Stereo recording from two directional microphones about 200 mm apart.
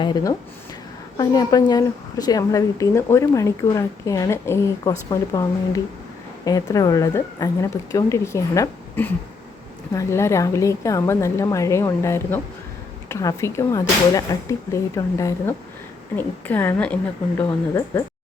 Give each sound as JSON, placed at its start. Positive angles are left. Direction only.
{"t": 0.0, "sound": "a woman's voice", "side_deg": 20}